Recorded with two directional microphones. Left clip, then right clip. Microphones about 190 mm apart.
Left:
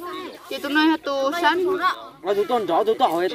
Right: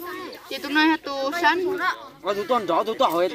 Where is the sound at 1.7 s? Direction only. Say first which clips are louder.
Left 3 dB; 45° left (ahead or behind).